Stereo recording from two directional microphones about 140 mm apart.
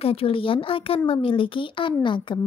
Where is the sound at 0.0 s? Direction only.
40° left (ahead or behind).